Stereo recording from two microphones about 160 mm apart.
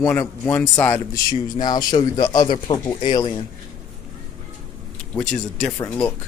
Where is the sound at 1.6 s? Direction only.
25° left (ahead or behind).